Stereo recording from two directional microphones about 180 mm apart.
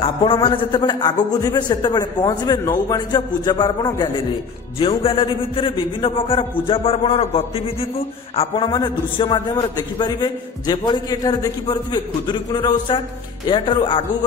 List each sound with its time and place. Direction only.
0.0 s a man's voice: 30° left (ahead or behind)